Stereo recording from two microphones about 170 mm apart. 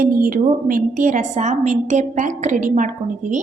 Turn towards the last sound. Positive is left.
turn(degrees=-50)  # may be behind; listen again after turning